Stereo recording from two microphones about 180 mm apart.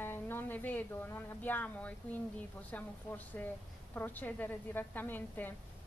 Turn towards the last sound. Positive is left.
turn(degrees=10)  # may be behind; listen again after turning